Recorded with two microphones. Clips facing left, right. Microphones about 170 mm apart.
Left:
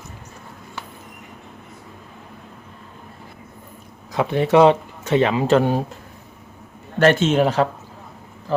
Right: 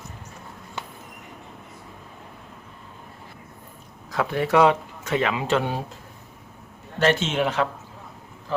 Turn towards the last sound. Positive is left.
turn(degrees=40)  # may be behind; listen again after turning